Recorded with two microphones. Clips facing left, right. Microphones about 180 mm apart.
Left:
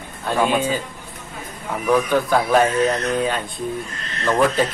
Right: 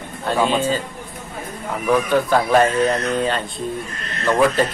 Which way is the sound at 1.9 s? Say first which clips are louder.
Right 1 dB; centre (ahead or behind).